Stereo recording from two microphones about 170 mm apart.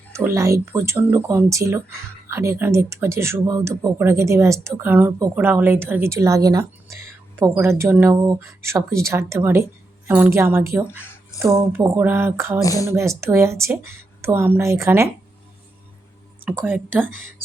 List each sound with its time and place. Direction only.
0.1 s speech: 15° right (ahead or behind)
11.3 s a sound: 20° left (ahead or behind)
11.7 s speech: 10° right (ahead or behind)
12.6 s speech: 20° left (ahead or behind)
12.9 s speech: 15° right (ahead or behind)
16.5 s speech: 10° right (ahead or behind)